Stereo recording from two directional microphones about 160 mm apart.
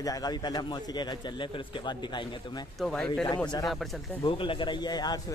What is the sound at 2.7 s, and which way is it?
Speech, 5° left (ahead or behind).